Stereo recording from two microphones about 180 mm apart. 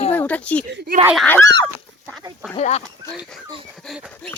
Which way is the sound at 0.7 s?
65° right (ahead or behind).